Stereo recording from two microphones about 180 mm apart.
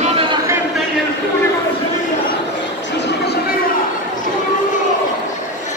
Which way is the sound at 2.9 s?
75° left (ahead or behind).